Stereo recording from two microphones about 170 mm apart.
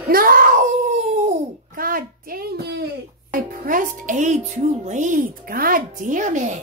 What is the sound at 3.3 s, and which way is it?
Speech, 55° right (ahead or behind).